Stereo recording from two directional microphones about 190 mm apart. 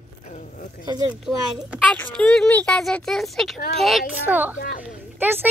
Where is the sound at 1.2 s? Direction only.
Centre (ahead or behind).